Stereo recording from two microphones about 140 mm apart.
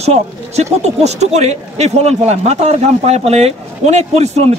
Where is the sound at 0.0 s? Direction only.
50° right (ahead or behind).